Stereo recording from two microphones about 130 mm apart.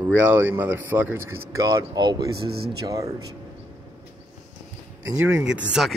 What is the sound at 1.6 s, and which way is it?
Speech, 30° right (ahead or behind).